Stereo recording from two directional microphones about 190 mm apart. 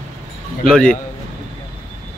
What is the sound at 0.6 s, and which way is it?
Speech, 5° left (ahead or behind).